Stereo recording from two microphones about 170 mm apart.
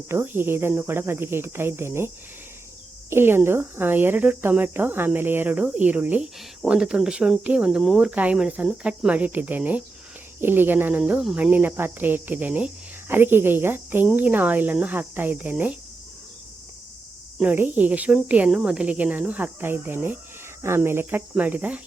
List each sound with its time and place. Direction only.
0.1 s speech: 15° right (ahead or behind)
3.1 s speech: 15° right (ahead or behind)
17.3 s speech: 10° right (ahead or behind)